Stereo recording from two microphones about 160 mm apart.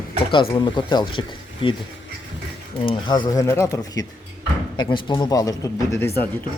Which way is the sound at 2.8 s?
30° left (ahead or behind).